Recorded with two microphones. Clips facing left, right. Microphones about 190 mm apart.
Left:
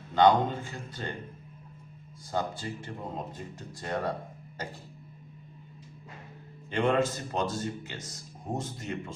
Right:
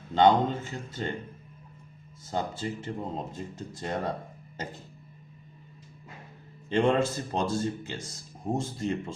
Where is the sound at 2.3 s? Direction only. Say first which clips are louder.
Right 1 dB; 25° right (ahead or behind).